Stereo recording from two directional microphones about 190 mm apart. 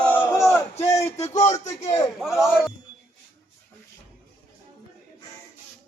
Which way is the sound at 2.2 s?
Centre (ahead or behind).